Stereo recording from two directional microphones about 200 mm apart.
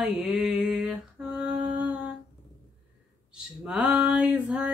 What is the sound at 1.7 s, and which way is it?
Humming, 5° right (ahead or behind).